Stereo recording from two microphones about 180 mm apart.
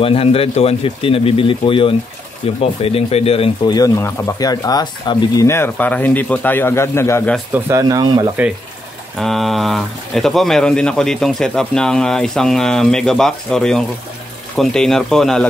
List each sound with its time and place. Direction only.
0.0 s speech: 30° left (ahead or behind); by 7.3 s 15° left (ahead or behind)
7.5 s speech: 15° right (ahead or behind)
9.2 s speech: centre (ahead or behind)